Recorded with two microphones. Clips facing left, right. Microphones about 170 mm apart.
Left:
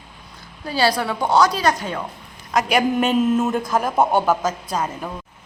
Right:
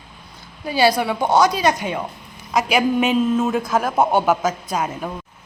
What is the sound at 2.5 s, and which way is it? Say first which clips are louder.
A man's voice: even; 5° right (ahead or behind).